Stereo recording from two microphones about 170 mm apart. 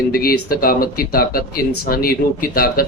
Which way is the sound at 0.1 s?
60° left (ahead or behind).